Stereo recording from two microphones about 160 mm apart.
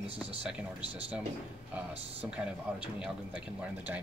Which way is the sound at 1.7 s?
10° right (ahead or behind).